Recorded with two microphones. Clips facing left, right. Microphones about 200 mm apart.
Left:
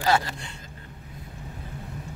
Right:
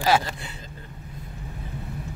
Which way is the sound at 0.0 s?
10° right (ahead or behind).